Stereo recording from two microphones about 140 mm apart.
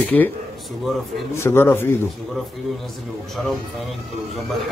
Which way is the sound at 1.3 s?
15° left (ahead or behind).